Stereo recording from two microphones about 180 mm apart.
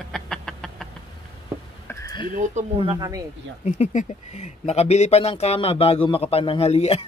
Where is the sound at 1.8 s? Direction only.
20° left (ahead or behind).